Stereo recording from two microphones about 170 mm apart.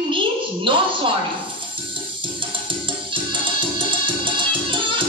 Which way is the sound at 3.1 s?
30° right (ahead or behind).